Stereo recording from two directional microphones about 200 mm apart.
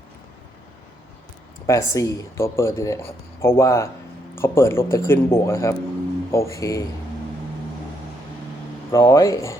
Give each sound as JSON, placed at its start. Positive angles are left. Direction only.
{"t": 1.6, "sound": "speech", "side_deg": 15}
{"t": 8.9, "sound": "speech", "side_deg": 15}